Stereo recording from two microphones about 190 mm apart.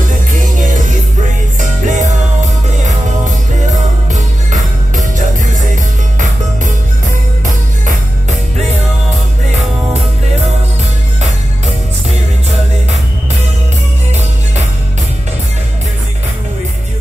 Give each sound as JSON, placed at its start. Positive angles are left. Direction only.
{"t": 0.3, "sound": "music", "side_deg": -45}